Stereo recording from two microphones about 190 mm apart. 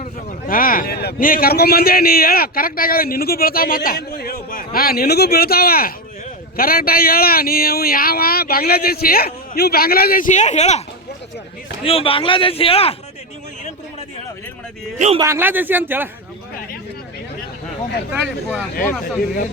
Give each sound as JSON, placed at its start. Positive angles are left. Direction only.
{"t": 0.4, "sound": "a man's voice", "side_deg": 45}
{"t": 14.9, "sound": "a man's voice", "side_deg": -40}
{"t": 15.2, "sound": "speech", "side_deg": -10}